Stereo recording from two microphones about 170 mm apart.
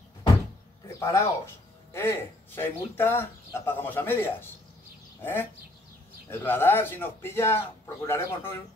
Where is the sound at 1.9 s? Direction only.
15° left (ahead or behind).